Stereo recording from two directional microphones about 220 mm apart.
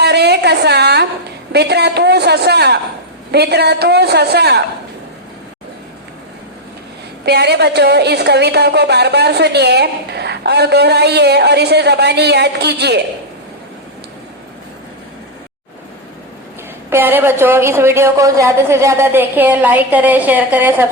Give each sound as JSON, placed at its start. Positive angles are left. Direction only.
{"t": 0.0, "sound": "a sound", "side_deg": -50}
{"t": 1.5, "sound": "a woman's voice", "side_deg": -50}
{"t": 7.3, "sound": "a woman's voice", "side_deg": -50}
{"t": 16.9, "sound": "a woman's voice", "side_deg": -10}